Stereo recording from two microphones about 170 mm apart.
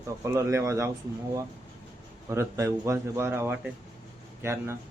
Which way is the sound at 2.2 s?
15° right (ahead or behind).